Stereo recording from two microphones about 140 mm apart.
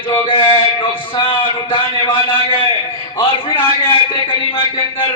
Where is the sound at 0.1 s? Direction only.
40° left (ahead or behind).